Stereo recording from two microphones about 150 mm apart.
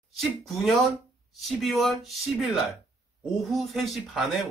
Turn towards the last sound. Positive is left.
turn(degrees=0)  # may be behind; listen again after turning